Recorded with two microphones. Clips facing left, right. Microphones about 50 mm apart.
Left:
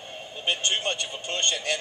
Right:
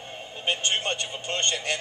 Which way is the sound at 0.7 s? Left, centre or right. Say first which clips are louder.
Even; right.